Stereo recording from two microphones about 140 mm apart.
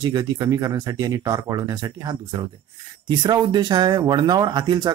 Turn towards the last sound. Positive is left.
turn(degrees=-30)  # may be behind; listen again after turning